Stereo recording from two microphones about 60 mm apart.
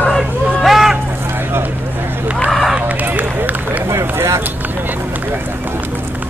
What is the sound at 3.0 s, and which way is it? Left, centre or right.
Run, right.